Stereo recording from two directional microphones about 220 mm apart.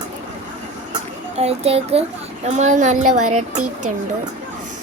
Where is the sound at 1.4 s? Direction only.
30° right (ahead or behind).